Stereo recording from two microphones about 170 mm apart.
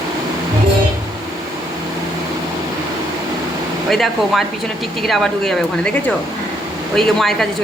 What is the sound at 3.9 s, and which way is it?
Speech, centre (ahead or behind).